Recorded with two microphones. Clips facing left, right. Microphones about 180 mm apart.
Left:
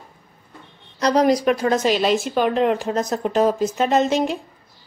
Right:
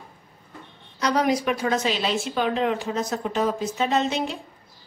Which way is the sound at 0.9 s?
35° left (ahead or behind).